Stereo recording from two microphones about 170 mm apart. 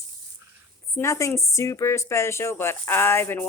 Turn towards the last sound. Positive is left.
turn(degrees=15)  # may be behind; listen again after turning